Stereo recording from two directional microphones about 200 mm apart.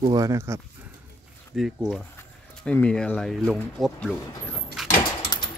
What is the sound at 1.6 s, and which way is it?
Speech, centre (ahead or behind).